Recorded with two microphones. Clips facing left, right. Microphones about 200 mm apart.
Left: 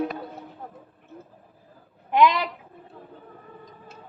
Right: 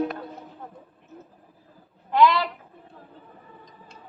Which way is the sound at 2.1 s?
15° left (ahead or behind).